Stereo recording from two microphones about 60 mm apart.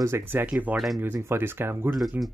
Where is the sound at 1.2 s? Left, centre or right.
Right.